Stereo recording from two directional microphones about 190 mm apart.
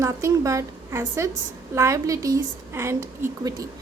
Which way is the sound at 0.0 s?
15° right (ahead or behind).